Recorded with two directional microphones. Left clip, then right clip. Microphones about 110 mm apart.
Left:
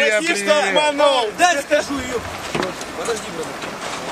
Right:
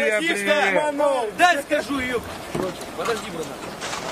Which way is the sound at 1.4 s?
Centre (ahead or behind).